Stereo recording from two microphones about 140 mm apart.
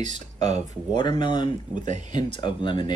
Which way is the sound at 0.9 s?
35° left (ahead or behind).